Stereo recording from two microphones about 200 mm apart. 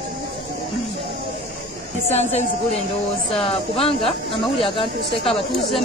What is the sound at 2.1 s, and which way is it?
Speech, 35° left (ahead or behind).